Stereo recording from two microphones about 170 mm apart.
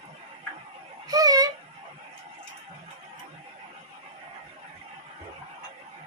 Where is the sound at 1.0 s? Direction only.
20° right (ahead or behind).